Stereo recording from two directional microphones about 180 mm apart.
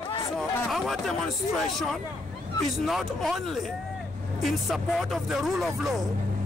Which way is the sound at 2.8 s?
Centre (ahead or behind).